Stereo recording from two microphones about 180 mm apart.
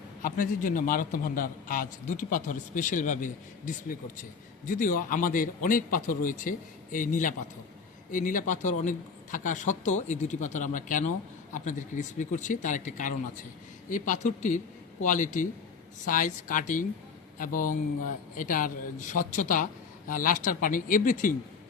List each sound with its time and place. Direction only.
0.2 s a man's voice: 50° left (ahead or behind)